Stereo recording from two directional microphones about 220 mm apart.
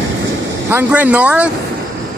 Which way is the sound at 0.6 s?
10° right (ahead or behind).